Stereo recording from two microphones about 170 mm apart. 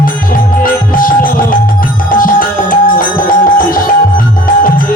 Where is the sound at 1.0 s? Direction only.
55° left (ahead or behind).